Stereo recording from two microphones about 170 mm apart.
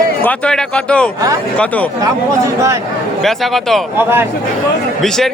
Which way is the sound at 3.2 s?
Centre (ahead or behind).